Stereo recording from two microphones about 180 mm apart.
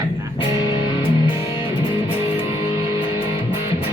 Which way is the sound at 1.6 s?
30° left (ahead or behind).